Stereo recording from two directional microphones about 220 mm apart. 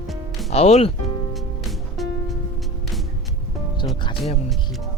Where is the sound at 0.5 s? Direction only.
30° left (ahead or behind).